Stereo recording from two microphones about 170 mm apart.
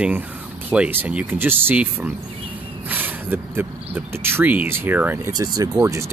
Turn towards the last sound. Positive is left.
turn(degrees=-15)  # may be behind; listen again after turning